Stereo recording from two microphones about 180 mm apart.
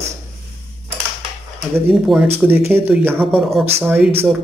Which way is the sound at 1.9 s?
Centre (ahead or behind).